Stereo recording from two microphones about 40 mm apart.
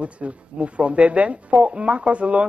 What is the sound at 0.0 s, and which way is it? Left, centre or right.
Speech, right.